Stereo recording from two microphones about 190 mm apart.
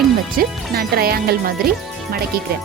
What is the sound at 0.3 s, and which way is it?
A woman's voice, 55° right (ahead or behind).